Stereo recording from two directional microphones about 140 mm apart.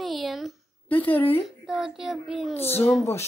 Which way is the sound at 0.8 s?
10° left (ahead or behind).